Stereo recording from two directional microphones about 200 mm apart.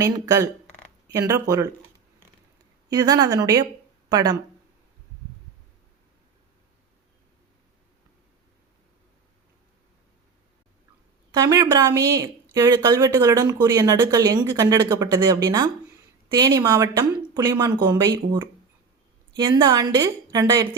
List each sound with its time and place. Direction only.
0.0 s speech: 20° right (ahead or behind)
2.9 s speech: 20° right (ahead or behind)
11.3 s speech: 15° right (ahead or behind)